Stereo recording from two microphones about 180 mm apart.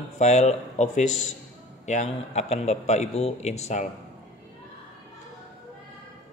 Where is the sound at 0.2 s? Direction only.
40° left (ahead or behind).